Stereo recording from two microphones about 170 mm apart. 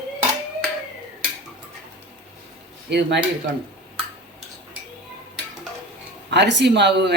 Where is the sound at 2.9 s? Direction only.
90° right.